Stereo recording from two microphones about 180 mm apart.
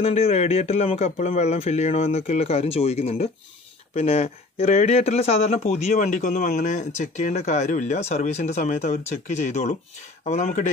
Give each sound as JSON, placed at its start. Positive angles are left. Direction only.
{"t": 0.0, "sound": "speech", "side_deg": 35}